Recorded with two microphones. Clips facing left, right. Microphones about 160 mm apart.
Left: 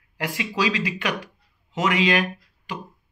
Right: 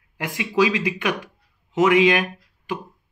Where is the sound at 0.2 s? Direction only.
20° right (ahead or behind).